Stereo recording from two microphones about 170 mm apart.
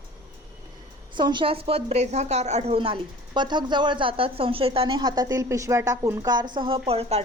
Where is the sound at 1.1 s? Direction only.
25° right (ahead or behind).